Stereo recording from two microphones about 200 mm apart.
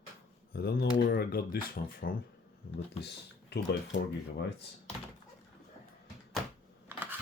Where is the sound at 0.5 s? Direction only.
55° left (ahead or behind).